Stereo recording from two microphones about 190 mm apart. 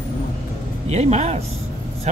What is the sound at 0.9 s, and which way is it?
Speech, 35° right (ahead or behind).